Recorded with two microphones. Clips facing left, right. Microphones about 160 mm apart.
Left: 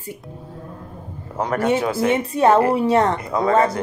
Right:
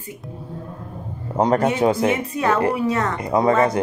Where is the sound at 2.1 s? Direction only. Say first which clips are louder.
Left 5 dB; 30° left (ahead or behind).